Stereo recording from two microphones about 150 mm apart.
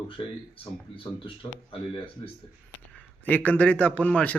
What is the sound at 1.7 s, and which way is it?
Speech, 35° left (ahead or behind).